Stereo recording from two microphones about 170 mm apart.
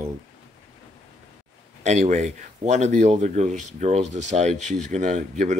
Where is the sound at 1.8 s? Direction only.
45° right (ahead or behind).